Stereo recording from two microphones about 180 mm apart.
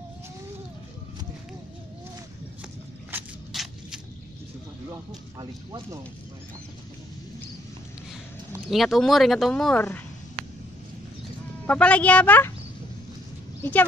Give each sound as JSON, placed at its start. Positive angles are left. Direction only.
{"t": 3.1, "sound": "a sound", "side_deg": -5}
{"t": 5.4, "sound": "speech", "side_deg": -20}
{"t": 8.6, "sound": "speech", "side_deg": 0}
{"t": 11.6, "sound": "speech", "side_deg": 5}